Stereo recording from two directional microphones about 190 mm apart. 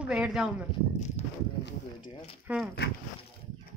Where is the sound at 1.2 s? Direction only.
35° left (ahead or behind).